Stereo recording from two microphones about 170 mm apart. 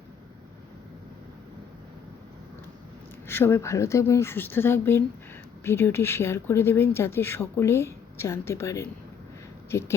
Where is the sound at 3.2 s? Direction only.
15° left (ahead or behind).